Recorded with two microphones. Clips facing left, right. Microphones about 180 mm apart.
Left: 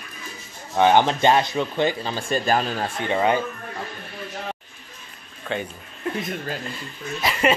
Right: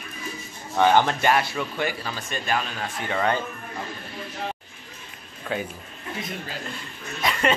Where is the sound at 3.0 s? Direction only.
20° left (ahead or behind).